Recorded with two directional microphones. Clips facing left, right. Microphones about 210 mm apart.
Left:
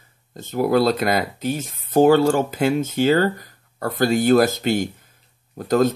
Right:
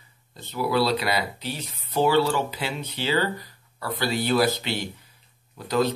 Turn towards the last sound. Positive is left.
turn(degrees=45)  # may be behind; listen again after turning